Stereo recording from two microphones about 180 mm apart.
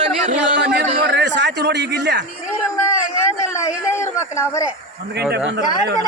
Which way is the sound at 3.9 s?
15° left (ahead or behind).